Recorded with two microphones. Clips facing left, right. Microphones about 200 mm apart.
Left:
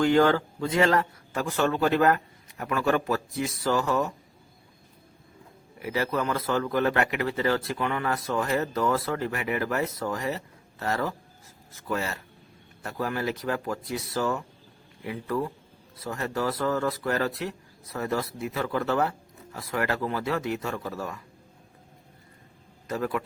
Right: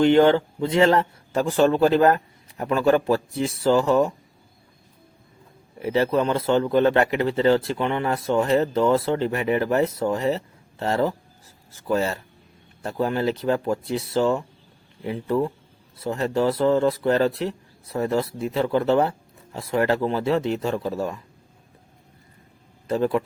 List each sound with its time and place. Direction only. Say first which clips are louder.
0.0 s speech: right 5 dB; 25° right (ahead or behind)
5.8 s speech: right 7 dB; 25° right (ahead or behind)
22.9 s speech: right 7 dB; 30° right (ahead or behind)